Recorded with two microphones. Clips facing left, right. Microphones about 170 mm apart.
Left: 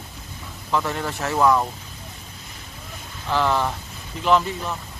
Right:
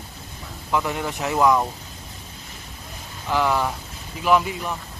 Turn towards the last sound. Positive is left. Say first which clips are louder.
# even
turn(degrees=-10)  # may be behind; listen again after turning